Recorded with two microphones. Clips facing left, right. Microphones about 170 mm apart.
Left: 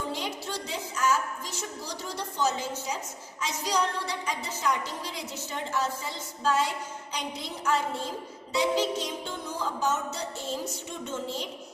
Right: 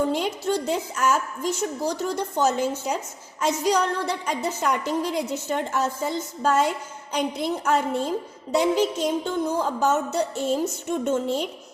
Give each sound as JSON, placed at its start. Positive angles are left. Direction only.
{"t": 0.1, "sound": "a woman's voice", "side_deg": -55}